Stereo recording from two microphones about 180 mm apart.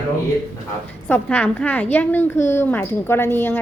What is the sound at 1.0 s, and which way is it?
A woman's voice, 10° left (ahead or behind).